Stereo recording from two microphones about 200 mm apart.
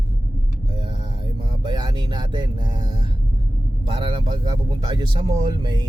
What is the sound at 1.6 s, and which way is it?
Speech, 20° right (ahead or behind).